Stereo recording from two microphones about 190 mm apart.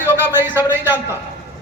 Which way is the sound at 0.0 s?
10° right (ahead or behind).